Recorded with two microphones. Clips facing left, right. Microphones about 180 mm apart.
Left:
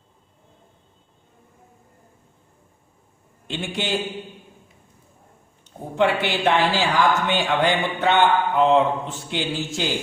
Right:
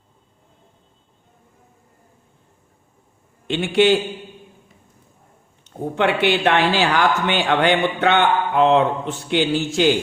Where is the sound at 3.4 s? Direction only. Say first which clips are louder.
Right 12 dB; 70° right (ahead or behind).